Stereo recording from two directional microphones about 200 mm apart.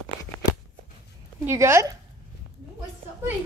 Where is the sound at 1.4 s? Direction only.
15° right (ahead or behind).